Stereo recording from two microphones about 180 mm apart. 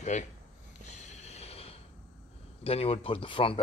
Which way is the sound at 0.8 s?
40° left (ahead or behind).